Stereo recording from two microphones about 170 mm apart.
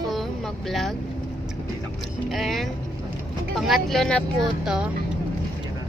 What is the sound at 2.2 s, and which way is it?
Speech, centre (ahead or behind).